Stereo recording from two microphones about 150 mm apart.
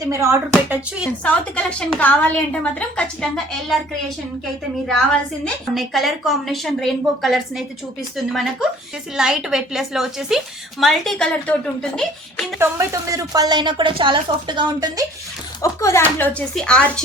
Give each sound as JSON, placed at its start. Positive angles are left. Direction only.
{"t": 0.0, "sound": "speech", "side_deg": -20}
{"t": 1.2, "sound": "a woman's voice", "side_deg": 5}
{"t": 5.7, "sound": "a woman's voice", "side_deg": 0}
{"t": 12.5, "sound": "a woman's voice", "side_deg": -20}
{"t": 15.6, "sound": "speech", "side_deg": 20}
{"t": 16.6, "sound": "a woman's voice", "side_deg": 5}